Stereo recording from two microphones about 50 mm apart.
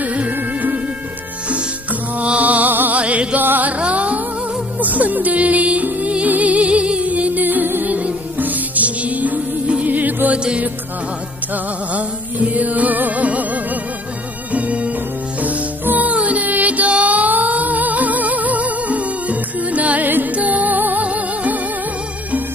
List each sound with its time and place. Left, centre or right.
0.0 s music: right
3.3 s music: right
7.9 s music: right
10.3 s music: right